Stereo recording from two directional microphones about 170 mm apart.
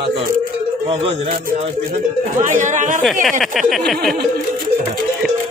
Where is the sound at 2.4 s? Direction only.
45° right (ahead or behind).